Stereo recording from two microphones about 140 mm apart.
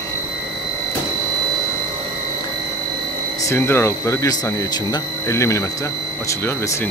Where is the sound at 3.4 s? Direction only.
15° left (ahead or behind).